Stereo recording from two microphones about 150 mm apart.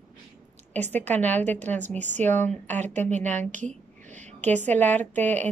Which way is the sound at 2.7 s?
50° right (ahead or behind).